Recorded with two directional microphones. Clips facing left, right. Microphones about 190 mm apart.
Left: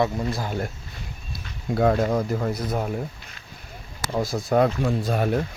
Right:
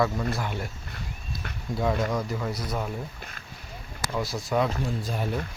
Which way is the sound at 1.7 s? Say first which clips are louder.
Left 6 dB; 55° left (ahead or behind).